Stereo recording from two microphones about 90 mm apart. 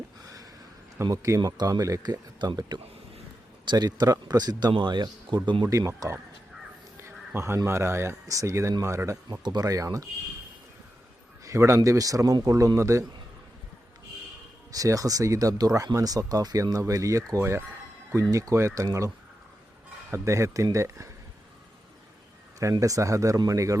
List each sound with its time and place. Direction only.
1.1 s speech: 35° right (ahead or behind)
1.4 s speech: 45° right (ahead or behind)
2.6 s a man's voice: 55° right (ahead or behind)
6.0 s speech: 40° right (ahead or behind)
7.0 s speech: 30° right (ahead or behind)
9.4 s speech: 50° right (ahead or behind)
11.4 s speech: 35° right (ahead or behind)
14.7 s speech: 40° right (ahead or behind)
22.8 s speech: 40° right (ahead or behind)